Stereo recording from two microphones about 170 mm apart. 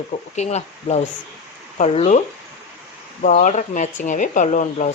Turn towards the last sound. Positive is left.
turn(degrees=45)  # may be behind; listen again after turning